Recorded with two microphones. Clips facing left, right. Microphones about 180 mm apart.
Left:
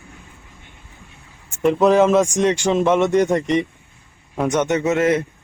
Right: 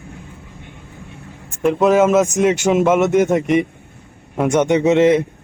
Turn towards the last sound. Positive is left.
turn(degrees=-20)  # may be behind; listen again after turning